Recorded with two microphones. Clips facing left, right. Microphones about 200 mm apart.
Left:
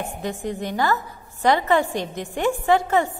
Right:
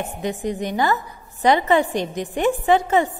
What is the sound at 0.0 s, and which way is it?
A woman's voice, 20° right (ahead or behind).